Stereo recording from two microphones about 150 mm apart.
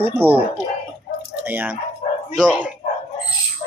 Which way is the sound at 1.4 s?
10° right (ahead or behind).